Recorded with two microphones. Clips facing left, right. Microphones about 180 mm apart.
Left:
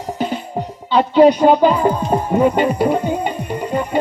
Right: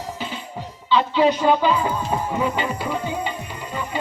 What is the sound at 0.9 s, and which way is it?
Speech, 50° left (ahead or behind).